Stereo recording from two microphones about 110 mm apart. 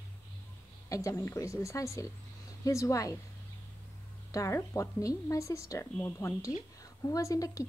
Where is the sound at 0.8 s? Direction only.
30° left (ahead or behind).